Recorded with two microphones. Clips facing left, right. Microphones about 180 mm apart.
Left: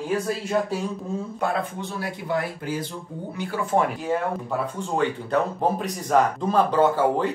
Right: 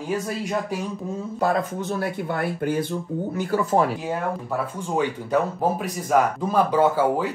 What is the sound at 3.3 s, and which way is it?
Speech, 40° right (ahead or behind).